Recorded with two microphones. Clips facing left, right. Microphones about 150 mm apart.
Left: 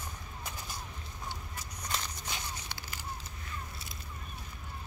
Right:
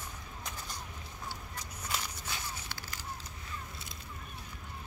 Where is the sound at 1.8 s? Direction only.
5° right (ahead or behind).